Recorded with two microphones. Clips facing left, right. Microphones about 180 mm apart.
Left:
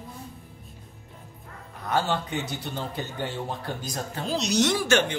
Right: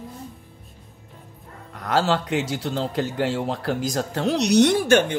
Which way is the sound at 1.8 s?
90° right.